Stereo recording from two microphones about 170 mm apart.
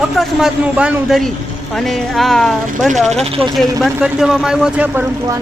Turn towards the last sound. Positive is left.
turn(degrees=-5)  # may be behind; listen again after turning